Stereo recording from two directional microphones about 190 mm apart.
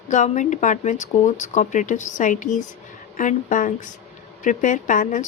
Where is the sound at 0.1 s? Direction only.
40° left (ahead or behind).